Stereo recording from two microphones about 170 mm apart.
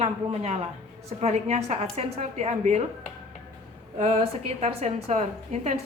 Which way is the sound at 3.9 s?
35° right (ahead or behind).